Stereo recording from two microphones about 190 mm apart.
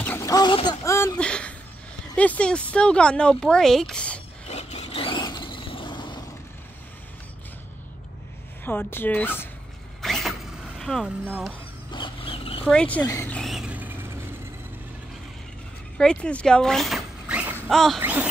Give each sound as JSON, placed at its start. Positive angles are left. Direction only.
{"t": 0.0, "sound": "a sound", "side_deg": 15}
{"t": 2.1, "sound": "speech", "side_deg": 5}
{"t": 4.5, "sound": "vehicle", "side_deg": 35}
{"t": 8.6, "sound": "speech", "side_deg": 10}
{"t": 10.0, "sound": "vehicle", "side_deg": 0}
{"t": 10.8, "sound": "speech", "side_deg": 0}
{"t": 11.9, "sound": "a sound", "side_deg": 25}
{"t": 12.6, "sound": "speech", "side_deg": 5}
{"t": 13.4, "sound": "vehicle", "side_deg": 0}
{"t": 16.0, "sound": "vehicle", "side_deg": 5}
{"t": 17.6, "sound": "a sound", "side_deg": 0}